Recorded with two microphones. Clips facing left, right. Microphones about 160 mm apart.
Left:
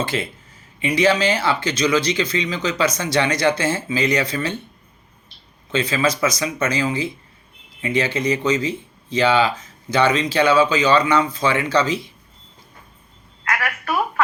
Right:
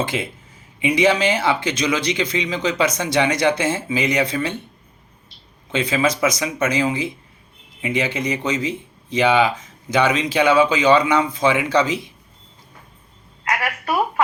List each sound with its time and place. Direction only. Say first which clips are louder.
0.0 s speech: even; 20° right (ahead or behind)
5.7 s speech: even; 20° right (ahead or behind)
13.6 s a woman's voice: right 1 dB; 15° right (ahead or behind)